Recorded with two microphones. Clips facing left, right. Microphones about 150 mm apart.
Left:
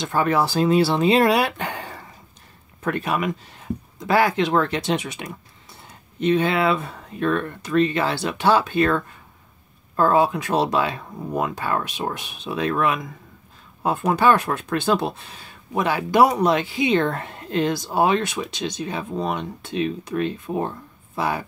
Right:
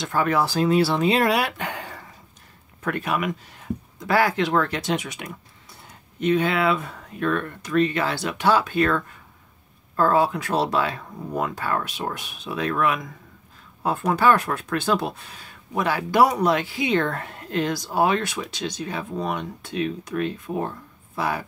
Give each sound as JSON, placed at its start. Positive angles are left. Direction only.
{"t": 0.0, "sound": "speech", "side_deg": 25}